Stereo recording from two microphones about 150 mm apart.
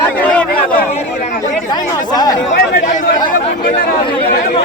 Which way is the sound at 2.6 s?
70° left (ahead or behind).